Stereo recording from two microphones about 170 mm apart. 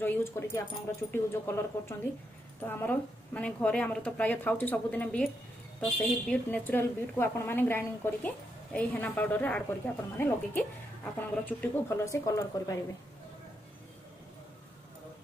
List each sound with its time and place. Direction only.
0.0 s a woman's voice: 10° left (ahead or behind)